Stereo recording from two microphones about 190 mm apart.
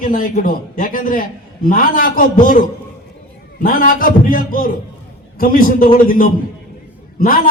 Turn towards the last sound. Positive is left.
turn(degrees=50)  # may be behind; listen again after turning